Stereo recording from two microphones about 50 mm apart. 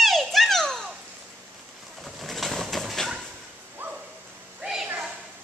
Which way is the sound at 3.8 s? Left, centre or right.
Right.